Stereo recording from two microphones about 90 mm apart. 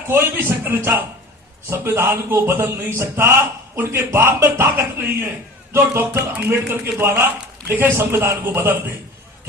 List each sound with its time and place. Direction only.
0.1 s speech: 30° right (ahead or behind)
4.4 s music: 35° right (ahead or behind)
4.6 s speech: 25° right (ahead or behind)